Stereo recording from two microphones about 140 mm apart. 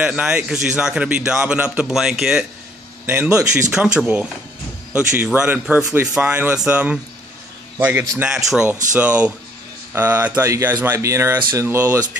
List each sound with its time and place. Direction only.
0.0 s a man's voice: 5° right (ahead or behind)